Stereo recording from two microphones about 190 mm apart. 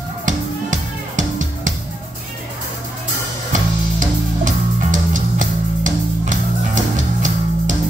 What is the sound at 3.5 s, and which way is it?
Music, 40° right (ahead or behind).